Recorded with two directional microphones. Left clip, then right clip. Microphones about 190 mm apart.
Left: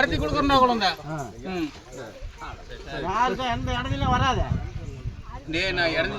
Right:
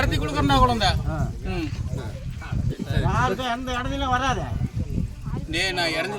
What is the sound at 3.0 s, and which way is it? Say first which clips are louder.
Speech: even; 40° right (ahead or behind).